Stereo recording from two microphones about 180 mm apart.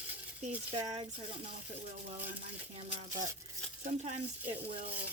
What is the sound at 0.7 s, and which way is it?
Speech, 35° right (ahead or behind).